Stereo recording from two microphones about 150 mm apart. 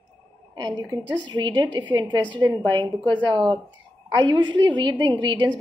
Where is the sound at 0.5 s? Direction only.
30° right (ahead or behind).